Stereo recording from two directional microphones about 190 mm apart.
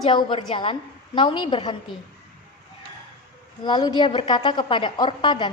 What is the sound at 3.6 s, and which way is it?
A woman's voice, 20° left (ahead or behind).